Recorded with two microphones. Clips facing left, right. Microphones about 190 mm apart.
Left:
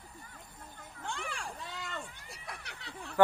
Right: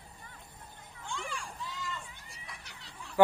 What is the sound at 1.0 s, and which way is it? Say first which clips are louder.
Vehicle: even; 65° left (ahead or behind).